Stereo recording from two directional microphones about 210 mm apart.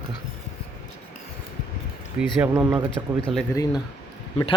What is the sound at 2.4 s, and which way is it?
Speech, 10° right (ahead or behind).